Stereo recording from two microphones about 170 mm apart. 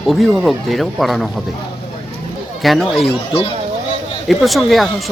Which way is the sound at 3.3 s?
35° left (ahead or behind).